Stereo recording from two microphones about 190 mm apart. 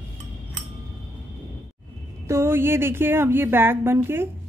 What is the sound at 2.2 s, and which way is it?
Speech, 15° right (ahead or behind).